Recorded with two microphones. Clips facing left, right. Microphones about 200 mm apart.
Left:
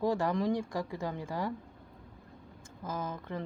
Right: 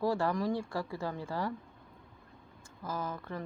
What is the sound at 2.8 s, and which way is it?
Speech, 20° left (ahead or behind).